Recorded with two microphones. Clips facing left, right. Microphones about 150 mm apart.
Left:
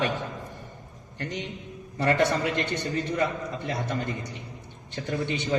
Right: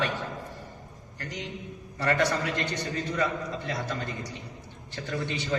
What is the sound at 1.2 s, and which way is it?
A man's voice, 25° left (ahead or behind).